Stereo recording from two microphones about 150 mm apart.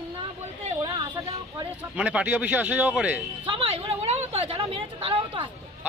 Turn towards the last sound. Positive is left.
turn(degrees=-35)  # may be behind; listen again after turning